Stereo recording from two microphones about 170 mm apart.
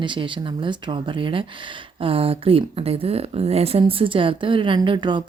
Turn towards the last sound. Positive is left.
turn(degrees=-30)  # may be behind; listen again after turning